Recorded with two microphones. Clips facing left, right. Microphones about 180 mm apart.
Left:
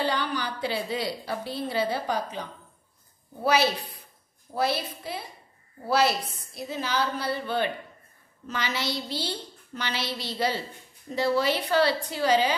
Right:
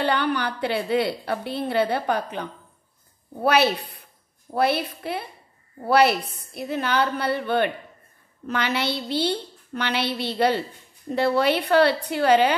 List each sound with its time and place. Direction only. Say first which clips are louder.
0.0 s a woman's voice: right 5 dB; 60° right (ahead or behind)
3.4 s a woman's voice: right 4 dB; 60° right (ahead or behind)